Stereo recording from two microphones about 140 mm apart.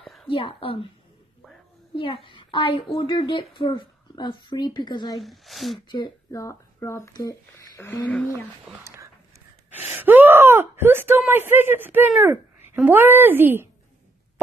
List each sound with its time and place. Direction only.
0.0 s a sound: centre (ahead or behind)
0.3 s a woman's voice: 40° left (ahead or behind)
2.0 s a woman's voice: 40° left (ahead or behind)
5.2 s speech: centre (ahead or behind)
5.9 s speech: 30° left (ahead or behind)
6.4 s speech: 20° left (ahead or behind)
9.7 s speech: 15° right (ahead or behind)